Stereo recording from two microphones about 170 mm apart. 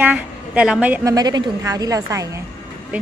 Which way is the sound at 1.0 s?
25° right (ahead or behind).